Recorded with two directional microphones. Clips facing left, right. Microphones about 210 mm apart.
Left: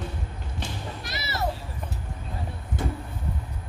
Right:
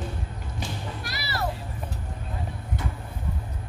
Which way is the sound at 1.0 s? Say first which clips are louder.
Left 1 dB; 20° left (ahead or behind).